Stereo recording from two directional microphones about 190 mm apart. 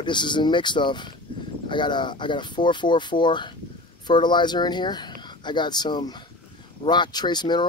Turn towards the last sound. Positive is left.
turn(degrees=25)  # may be behind; listen again after turning